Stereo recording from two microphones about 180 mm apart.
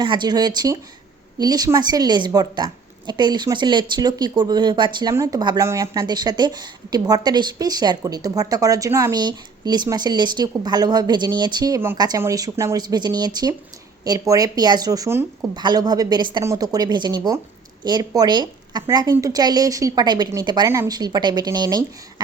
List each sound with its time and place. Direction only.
0.0 s speech: 25° right (ahead or behind)